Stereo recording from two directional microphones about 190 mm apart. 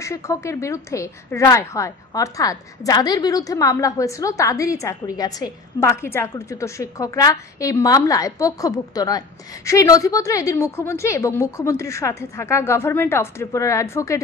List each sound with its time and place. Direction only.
0.0 s a woman's voice: 15° left (ahead or behind)